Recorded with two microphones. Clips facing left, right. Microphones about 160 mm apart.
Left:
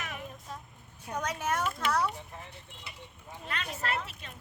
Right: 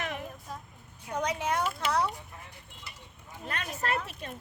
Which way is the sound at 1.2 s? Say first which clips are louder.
Right 3 dB; 15° right (ahead or behind).